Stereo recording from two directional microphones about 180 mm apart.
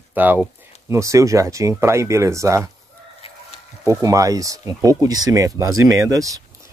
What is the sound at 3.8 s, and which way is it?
Speech, 20° right (ahead or behind).